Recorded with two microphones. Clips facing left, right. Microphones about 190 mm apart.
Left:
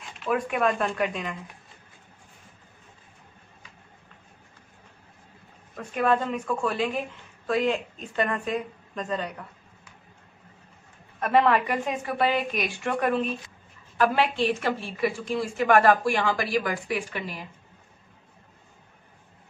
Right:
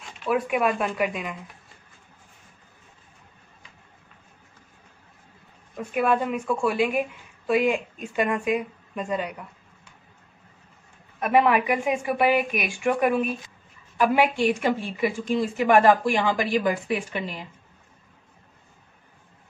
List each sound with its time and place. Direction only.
0.0 s a woman's voice: 5° right (ahead or behind)
5.8 s a woman's voice: 10° right (ahead or behind)
11.1 s a woman's voice: 10° right (ahead or behind)